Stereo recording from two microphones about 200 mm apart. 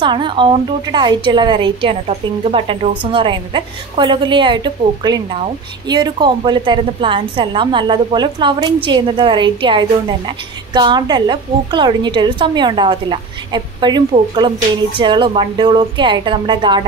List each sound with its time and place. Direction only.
0.0 s a woman's voice: 25° right (ahead or behind)